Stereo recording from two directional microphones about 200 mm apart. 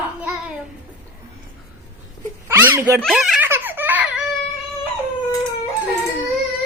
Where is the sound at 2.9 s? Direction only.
Centre (ahead or behind).